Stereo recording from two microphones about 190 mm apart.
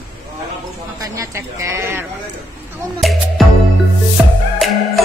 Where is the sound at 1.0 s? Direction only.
15° right (ahead or behind).